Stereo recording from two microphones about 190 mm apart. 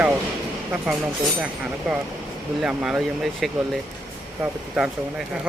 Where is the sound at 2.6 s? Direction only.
5° right (ahead or behind).